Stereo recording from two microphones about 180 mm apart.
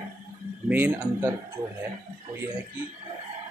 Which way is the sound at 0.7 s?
10° right (ahead or behind).